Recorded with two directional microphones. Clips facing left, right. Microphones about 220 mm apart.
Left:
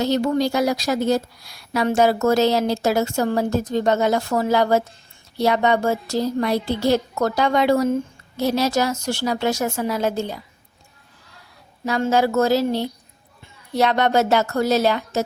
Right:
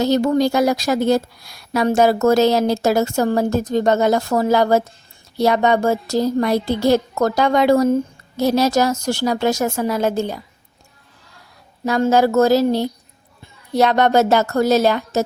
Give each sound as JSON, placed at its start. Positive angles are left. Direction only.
{"t": 0.0, "sound": "a woman's voice", "side_deg": -45}
{"t": 11.9, "sound": "a woman's voice", "side_deg": -45}